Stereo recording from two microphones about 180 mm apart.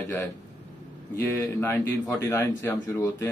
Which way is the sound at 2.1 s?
15° left (ahead or behind).